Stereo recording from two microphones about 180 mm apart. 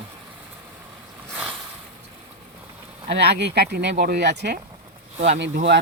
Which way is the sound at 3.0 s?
70° right (ahead or behind).